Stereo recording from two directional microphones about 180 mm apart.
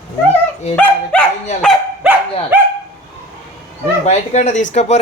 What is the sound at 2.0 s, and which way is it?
Dog, 5° right (ahead or behind).